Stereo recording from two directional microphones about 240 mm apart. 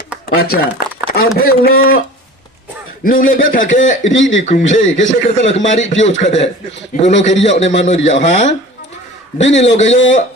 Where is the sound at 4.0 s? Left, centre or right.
Left.